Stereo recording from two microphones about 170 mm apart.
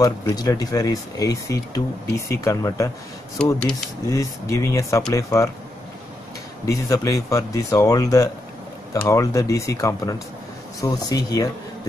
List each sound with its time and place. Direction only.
0.0 s speech: 20° left (ahead or behind)
6.6 s speech: 20° left (ahead or behind)